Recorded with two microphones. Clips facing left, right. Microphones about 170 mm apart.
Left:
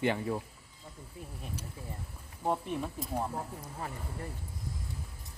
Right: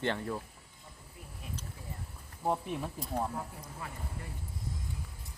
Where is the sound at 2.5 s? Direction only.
Centre (ahead or behind).